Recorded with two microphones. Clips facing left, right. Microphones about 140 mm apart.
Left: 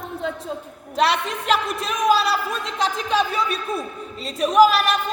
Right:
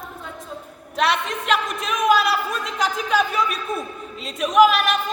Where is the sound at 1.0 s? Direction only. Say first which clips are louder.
Left 1 dB; 35° left (ahead or behind).